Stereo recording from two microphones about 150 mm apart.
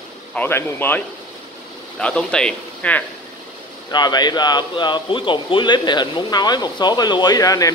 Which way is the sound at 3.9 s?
30° left (ahead or behind).